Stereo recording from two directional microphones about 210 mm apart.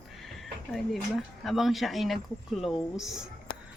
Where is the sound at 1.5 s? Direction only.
Centre (ahead or behind).